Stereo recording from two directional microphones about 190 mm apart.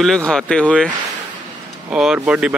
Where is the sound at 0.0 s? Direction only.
5° left (ahead or behind).